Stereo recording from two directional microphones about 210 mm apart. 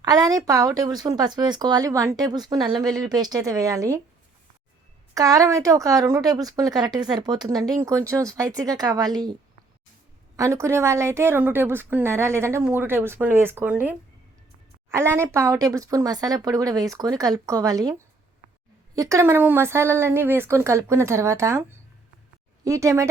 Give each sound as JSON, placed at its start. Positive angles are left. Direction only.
{"t": 0.0, "sound": "speech", "side_deg": -20}
{"t": 5.1, "sound": "speech", "side_deg": -15}
{"t": 10.3, "sound": "speech", "side_deg": -15}
{"t": 22.6, "sound": "speech", "side_deg": -15}